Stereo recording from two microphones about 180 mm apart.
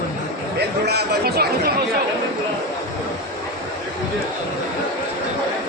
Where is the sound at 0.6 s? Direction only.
65° right (ahead or behind).